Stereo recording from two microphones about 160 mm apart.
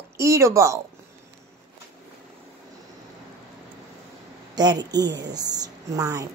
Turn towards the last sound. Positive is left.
turn(degrees=-20)  # may be behind; listen again after turning